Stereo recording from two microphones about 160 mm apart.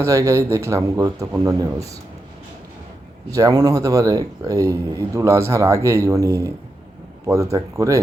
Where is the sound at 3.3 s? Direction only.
20° right (ahead or behind).